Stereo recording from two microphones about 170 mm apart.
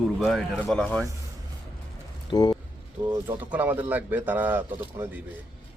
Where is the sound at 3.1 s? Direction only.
10° right (ahead or behind).